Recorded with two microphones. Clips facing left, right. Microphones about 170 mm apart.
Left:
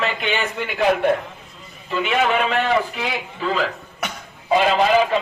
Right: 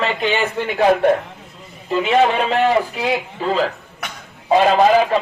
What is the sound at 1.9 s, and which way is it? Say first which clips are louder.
Speech: right 4 dB; 35° right (ahead or behind).